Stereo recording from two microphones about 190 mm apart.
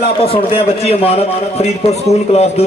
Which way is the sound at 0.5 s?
30° left (ahead or behind).